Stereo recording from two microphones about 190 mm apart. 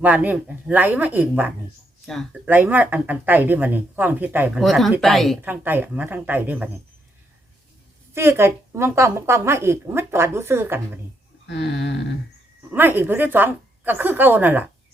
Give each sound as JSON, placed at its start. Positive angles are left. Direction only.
{"t": 0.0, "sound": "a woman's voice", "side_deg": -10}
{"t": 2.0, "sound": "speech", "side_deg": 0}
{"t": 2.5, "sound": "a woman's voice", "side_deg": -10}
{"t": 5.4, "sound": "a woman's voice", "side_deg": -10}
{"t": 8.1, "sound": "a woman's voice", "side_deg": -15}
{"t": 11.4, "sound": "a sound", "side_deg": 65}
{"t": 12.7, "sound": "a woman's voice", "side_deg": -10}